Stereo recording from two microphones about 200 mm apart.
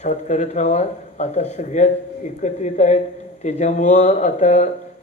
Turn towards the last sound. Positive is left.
turn(degrees=35)  # may be behind; listen again after turning